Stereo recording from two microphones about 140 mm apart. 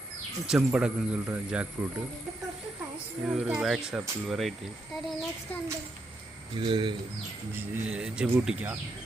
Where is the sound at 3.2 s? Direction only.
5° right (ahead or behind).